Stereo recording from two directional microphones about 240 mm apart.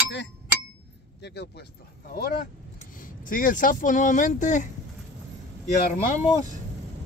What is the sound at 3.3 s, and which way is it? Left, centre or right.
Speech, left.